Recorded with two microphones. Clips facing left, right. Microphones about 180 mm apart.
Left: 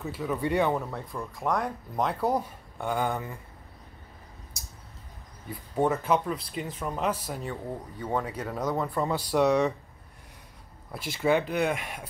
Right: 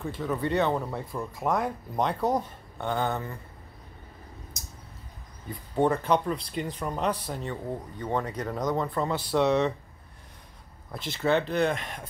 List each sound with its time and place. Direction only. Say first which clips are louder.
0.0 s speech: even; 5° left (ahead or behind)
0.8 s speech: right 2 dB; 5° right (ahead or behind)
5.5 s speech: right 1 dB; 5° left (ahead or behind)
10.9 s speech: left 1 dB; 10° left (ahead or behind)